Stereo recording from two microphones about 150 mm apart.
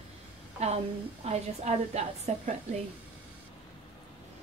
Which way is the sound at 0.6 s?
45° right (ahead or behind).